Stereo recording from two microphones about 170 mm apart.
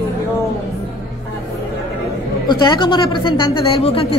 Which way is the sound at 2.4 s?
25° left (ahead or behind).